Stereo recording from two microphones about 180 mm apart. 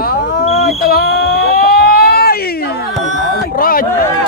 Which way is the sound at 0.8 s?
60° left (ahead or behind).